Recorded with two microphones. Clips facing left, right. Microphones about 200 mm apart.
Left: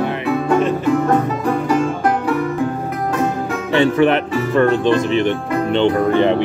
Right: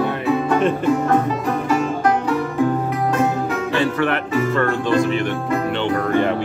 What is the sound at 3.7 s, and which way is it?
Speech, 20° left (ahead or behind).